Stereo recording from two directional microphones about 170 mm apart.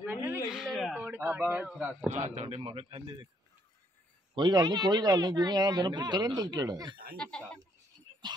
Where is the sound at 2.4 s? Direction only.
35° right (ahead or behind).